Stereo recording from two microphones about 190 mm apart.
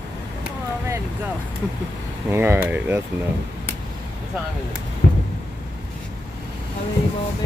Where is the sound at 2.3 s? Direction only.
10° right (ahead or behind).